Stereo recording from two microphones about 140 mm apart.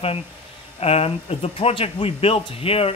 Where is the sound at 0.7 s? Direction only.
45° left (ahead or behind).